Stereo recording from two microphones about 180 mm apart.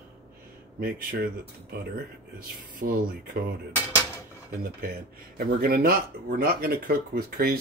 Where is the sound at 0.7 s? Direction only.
55° right (ahead or behind).